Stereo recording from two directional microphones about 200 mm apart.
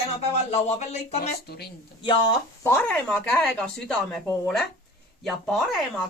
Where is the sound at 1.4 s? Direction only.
55° left (ahead or behind).